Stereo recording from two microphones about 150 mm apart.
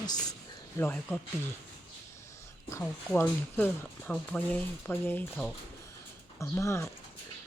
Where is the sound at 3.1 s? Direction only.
10° left (ahead or behind).